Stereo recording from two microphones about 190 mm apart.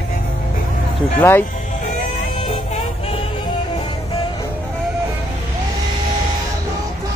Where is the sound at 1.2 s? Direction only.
10° left (ahead or behind).